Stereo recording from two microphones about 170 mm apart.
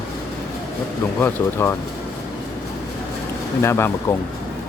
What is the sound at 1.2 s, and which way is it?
Speech, 15° left (ahead or behind).